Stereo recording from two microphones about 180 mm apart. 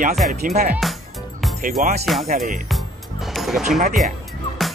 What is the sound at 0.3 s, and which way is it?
Speech, 50° right (ahead or behind).